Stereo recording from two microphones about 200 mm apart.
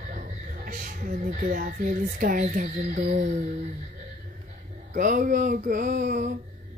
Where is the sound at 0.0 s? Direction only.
40° right (ahead or behind).